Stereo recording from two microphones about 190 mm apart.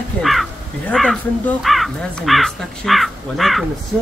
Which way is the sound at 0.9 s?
Centre (ahead or behind).